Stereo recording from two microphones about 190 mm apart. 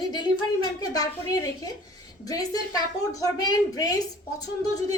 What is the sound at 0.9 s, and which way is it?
A woman's voice, 20° left (ahead or behind).